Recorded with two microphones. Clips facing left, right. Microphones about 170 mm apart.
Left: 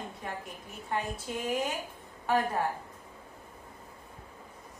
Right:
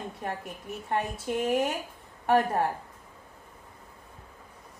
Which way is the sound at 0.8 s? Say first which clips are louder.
Right 4 dB; 60° right (ahead or behind).